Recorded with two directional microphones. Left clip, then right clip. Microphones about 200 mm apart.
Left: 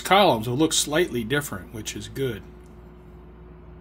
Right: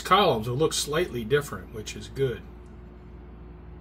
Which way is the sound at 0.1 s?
65° left (ahead or behind).